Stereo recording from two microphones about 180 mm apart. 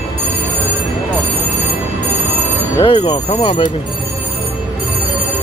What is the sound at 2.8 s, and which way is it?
Speech, 30° left (ahead or behind).